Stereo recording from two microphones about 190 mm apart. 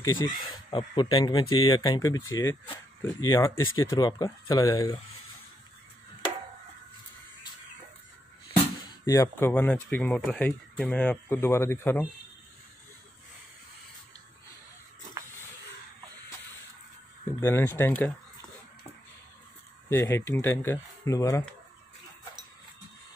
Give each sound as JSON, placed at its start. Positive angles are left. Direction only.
{"t": 0.0, "sound": "speech", "side_deg": 20}
{"t": 9.0, "sound": "speech", "side_deg": 15}
{"t": 17.4, "sound": "speech", "side_deg": 10}
{"t": 19.9, "sound": "speech", "side_deg": 15}